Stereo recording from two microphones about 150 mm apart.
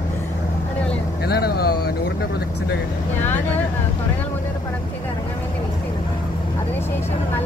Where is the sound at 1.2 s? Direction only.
90° left.